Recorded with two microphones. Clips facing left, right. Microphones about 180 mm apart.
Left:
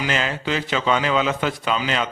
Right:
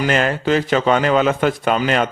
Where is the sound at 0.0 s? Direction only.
55° right (ahead or behind).